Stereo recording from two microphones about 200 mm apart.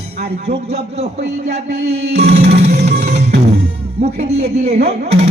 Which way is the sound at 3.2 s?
55° right (ahead or behind).